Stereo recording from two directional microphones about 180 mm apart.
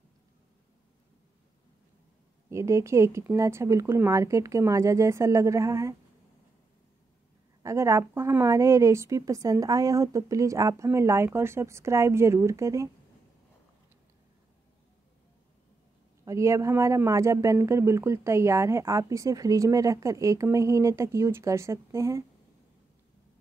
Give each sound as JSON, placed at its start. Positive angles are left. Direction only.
{"t": 2.5, "sound": "speech", "side_deg": -15}
{"t": 7.6, "sound": "speech", "side_deg": -15}
{"t": 16.3, "sound": "speech", "side_deg": -15}